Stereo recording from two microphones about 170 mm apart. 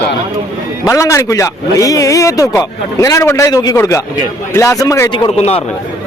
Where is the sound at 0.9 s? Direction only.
20° left (ahead or behind); by 5.6 s 35° left (ahead or behind).